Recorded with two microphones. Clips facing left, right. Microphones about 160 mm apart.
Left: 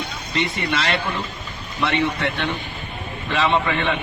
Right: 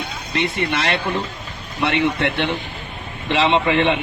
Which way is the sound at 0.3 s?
55° right (ahead or behind).